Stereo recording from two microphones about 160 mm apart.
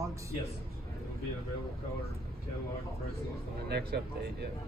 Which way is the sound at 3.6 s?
90° right.